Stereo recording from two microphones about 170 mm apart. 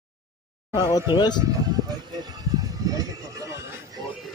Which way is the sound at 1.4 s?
25° right (ahead or behind).